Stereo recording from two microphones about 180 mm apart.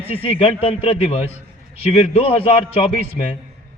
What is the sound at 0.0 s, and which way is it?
A man's voice, 30° left (ahead or behind).